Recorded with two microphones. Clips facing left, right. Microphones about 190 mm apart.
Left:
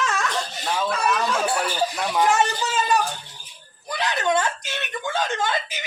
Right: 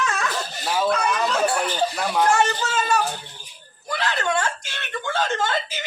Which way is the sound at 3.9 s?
20° left (ahead or behind).